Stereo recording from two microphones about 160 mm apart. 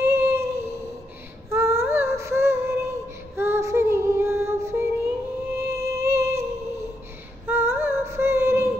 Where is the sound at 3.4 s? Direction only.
15° right (ahead or behind).